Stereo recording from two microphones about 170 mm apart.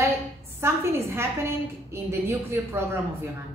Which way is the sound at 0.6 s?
15° right (ahead or behind).